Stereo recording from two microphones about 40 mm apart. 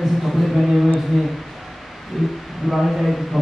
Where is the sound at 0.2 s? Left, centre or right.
Centre.